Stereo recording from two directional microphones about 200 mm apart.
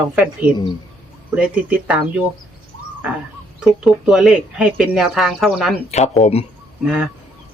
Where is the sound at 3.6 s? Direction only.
Centre (ahead or behind).